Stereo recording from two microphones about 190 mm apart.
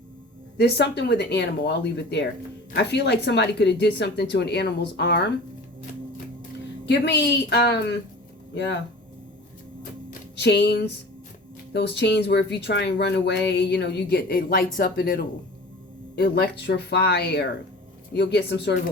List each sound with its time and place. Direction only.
0.5 s speech: 60° left (ahead or behind)
6.8 s speech: 65° left (ahead or behind)
10.1 s music: 60° left (ahead or behind)
11.7 s speech: 60° left (ahead or behind)
16.1 s speech: 60° left (ahead or behind)